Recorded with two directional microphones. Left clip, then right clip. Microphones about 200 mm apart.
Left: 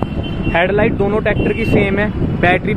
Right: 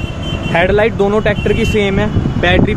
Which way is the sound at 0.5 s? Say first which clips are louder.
Right 3 dB; 5° right (ahead or behind).